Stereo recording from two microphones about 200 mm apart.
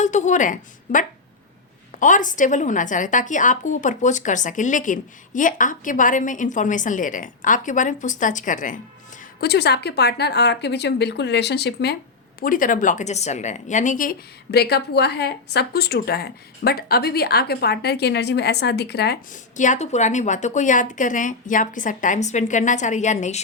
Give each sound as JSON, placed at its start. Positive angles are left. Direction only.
{"t": 0.0, "sound": "a woman's voice", "side_deg": 35}
{"t": 9.4, "sound": "speech", "side_deg": 55}
{"t": 12.4, "sound": "a woman's voice", "side_deg": 40}
{"t": 19.3, "sound": "a woman's voice", "side_deg": 40}